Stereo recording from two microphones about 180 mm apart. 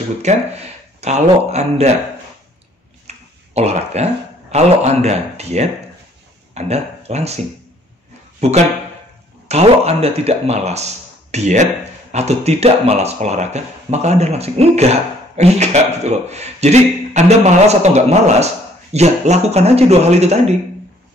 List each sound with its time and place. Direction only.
0.2 s speech: 40° right (ahead or behind)
3.1 s speech: 35° right (ahead or behind)
8.4 s speech: 40° right (ahead or behind)